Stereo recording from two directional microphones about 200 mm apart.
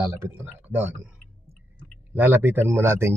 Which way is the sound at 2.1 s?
10° right (ahead or behind).